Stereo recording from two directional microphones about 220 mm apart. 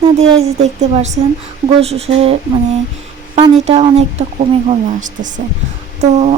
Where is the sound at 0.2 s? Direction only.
30° right (ahead or behind).